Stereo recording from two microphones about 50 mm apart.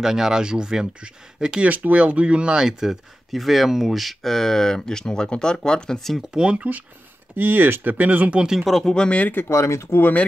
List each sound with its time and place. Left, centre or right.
0.0 s speech: centre
1.7 s speech: right
2.6 s speech: centre
6.3 s speech: right
7.3 s speech: right
8.4 s speech: centre
8.8 s speech: centre
9.5 s speech: left